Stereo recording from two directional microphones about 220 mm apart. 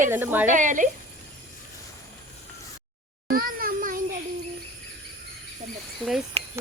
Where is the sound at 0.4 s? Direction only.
35° right (ahead or behind).